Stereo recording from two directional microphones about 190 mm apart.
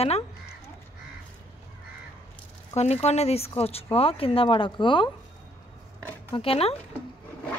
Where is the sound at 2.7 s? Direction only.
35° left (ahead or behind).